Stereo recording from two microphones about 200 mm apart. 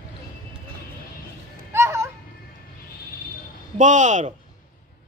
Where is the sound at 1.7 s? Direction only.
15° right (ahead or behind).